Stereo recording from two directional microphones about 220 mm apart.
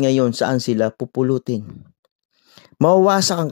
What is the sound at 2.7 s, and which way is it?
Speech, 30° left (ahead or behind).